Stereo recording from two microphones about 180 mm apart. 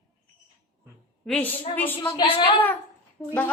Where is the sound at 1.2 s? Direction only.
10° left (ahead or behind).